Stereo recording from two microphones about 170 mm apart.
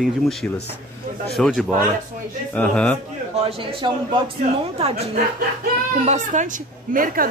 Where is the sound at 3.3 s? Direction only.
35° right (ahead or behind).